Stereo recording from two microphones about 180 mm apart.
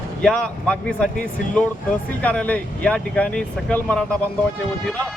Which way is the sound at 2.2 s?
5° left (ahead or behind).